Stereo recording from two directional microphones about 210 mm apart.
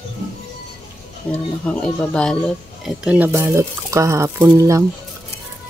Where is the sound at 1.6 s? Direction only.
5° left (ahead or behind); by 4.9 s 15° right (ahead or behind).